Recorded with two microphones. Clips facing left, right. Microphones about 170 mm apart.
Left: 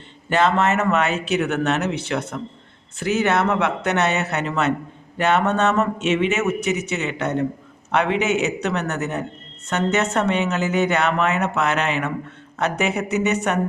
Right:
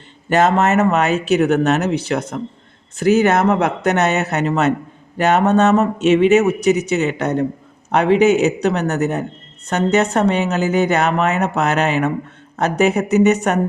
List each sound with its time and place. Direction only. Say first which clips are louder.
0.3 s speech: right 4 dB; 45° right (ahead or behind)